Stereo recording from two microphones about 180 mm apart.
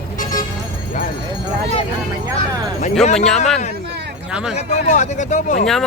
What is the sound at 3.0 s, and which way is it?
Speech, 35° left (ahead or behind).